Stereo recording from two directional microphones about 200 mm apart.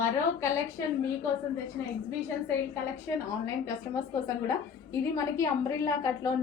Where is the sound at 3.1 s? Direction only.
10° left (ahead or behind).